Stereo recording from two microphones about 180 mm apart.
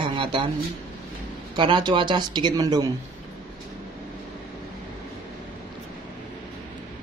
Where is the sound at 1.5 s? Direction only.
25° right (ahead or behind).